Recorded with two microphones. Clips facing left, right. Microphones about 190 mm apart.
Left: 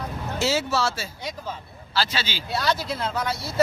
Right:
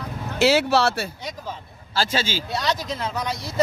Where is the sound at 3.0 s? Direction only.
15° right (ahead or behind).